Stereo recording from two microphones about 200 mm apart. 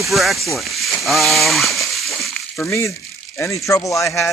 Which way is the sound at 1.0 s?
Centre (ahead or behind).